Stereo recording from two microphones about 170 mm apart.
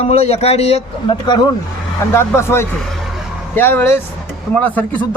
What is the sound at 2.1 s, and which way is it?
Speech, 15° left (ahead or behind).